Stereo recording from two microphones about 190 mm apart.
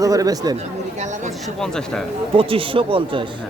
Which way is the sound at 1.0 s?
40° right (ahead or behind).